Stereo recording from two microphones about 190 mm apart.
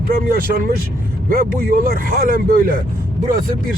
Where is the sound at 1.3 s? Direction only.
50° right (ahead or behind).